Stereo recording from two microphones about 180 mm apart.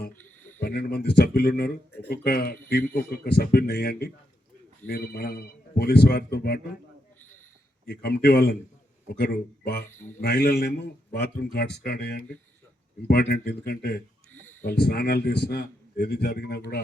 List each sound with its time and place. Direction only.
0.6 s a man's voice: 60° left (ahead or behind)
7.9 s a man's voice: 60° left (ahead or behind)
9.9 s speech: 10° left (ahead or behind)
10.2 s a man's voice: 60° left (ahead or behind)